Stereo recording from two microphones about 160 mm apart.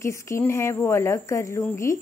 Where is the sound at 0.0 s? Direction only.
20° left (ahead or behind).